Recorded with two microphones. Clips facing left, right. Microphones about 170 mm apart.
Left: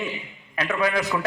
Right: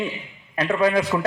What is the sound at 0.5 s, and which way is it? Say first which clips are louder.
Speech: right 4 dB; 30° right (ahead or behind).